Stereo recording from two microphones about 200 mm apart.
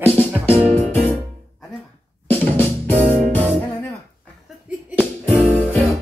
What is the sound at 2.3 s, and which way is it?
Music, 10° left (ahead or behind).